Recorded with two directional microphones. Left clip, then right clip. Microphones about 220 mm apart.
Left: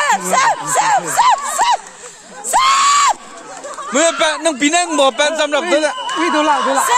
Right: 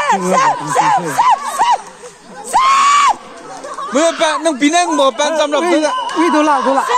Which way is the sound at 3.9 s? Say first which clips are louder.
Right 1 dB; 50° left (ahead or behind).